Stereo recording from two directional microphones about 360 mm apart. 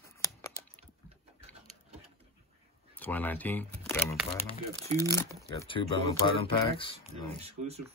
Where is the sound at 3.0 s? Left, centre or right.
Centre.